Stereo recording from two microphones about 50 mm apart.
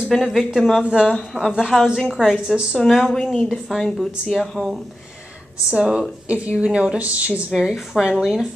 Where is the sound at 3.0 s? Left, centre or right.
Centre.